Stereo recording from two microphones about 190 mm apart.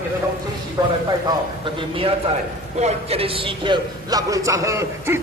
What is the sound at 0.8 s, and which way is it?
A man's voice, 20° right (ahead or behind).